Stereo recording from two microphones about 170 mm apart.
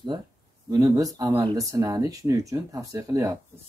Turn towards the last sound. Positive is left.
turn(degrees=-20)  # may be behind; listen again after turning